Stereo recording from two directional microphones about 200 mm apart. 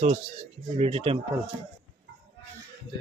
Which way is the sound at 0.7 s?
30° right (ahead or behind).